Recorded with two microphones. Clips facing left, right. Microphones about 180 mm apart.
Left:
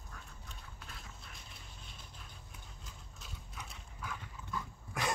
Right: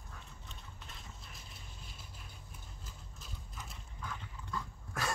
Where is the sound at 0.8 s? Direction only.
Centre (ahead or behind).